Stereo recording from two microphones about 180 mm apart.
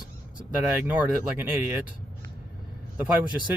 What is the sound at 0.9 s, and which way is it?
Speech, 10° right (ahead or behind).